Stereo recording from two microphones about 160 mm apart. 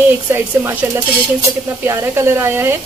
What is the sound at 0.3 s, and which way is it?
Speech, 15° right (ahead or behind).